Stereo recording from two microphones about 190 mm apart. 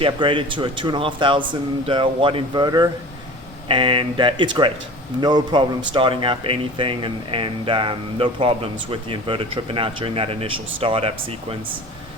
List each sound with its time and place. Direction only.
0.0 s speech: 25° right (ahead or behind)